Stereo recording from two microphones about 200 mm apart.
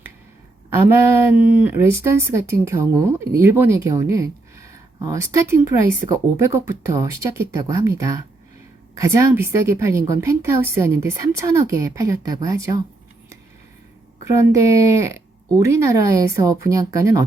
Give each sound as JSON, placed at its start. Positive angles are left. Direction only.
{"t": 1.5, "sound": "speech", "side_deg": -10}
{"t": 14.3, "sound": "speech", "side_deg": -15}